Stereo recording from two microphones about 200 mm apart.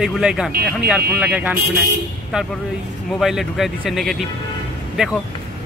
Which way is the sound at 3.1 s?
Centre (ahead or behind).